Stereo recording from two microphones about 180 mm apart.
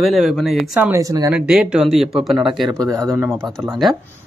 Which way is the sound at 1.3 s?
5° right (ahead or behind).